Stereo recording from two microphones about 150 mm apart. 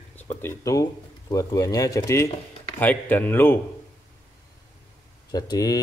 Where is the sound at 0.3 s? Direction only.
15° left (ahead or behind).